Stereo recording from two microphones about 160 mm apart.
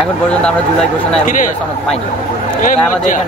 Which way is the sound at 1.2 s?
55° left (ahead or behind).